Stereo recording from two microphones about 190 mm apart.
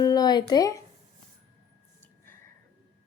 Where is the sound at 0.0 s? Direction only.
20° left (ahead or behind).